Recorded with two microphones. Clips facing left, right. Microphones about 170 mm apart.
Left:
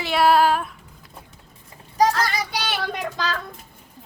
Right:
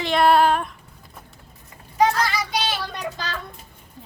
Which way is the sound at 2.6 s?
65° left (ahead or behind).